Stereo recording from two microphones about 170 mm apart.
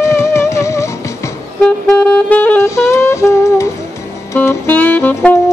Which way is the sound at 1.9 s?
10° left (ahead or behind).